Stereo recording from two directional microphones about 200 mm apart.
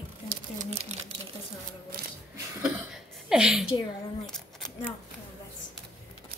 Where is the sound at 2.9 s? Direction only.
Centre (ahead or behind).